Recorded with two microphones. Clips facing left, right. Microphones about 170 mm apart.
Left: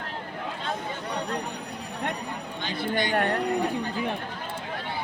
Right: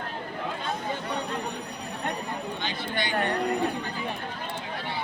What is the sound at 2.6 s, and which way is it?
Speech, 45° left (ahead or behind).